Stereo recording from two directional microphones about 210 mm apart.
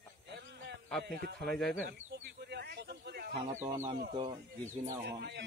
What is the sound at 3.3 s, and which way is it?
Speech, 35° right (ahead or behind).